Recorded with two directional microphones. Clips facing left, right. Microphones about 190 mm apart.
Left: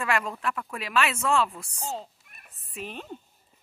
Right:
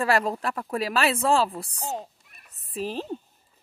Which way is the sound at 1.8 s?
15° right (ahead or behind).